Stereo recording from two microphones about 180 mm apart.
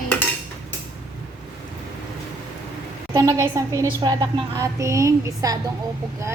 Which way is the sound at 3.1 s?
20° right (ahead or behind).